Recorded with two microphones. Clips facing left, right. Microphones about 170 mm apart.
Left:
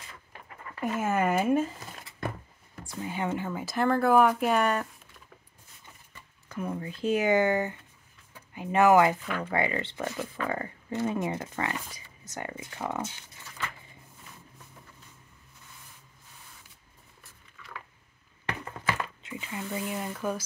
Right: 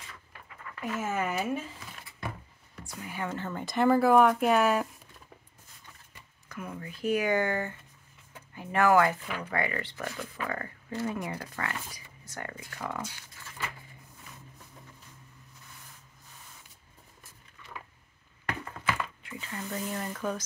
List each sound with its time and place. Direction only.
0.5 s a sound: 30° left (ahead or behind)
1.0 s speech: 50° left (ahead or behind)
2.8 s speech: 25° left (ahead or behind); by 4.8 s 5° right (ahead or behind)
6.5 s speech: 30° left (ahead or behind)
18.9 s speech: 20° left (ahead or behind)